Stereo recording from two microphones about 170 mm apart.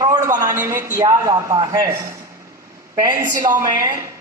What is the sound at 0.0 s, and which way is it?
A man's voice, 20° right (ahead or behind).